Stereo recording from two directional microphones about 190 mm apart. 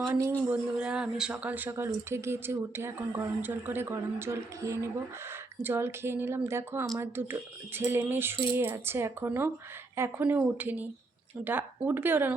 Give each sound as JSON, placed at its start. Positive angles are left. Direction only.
{"t": 0.1, "sound": "speech", "side_deg": -10}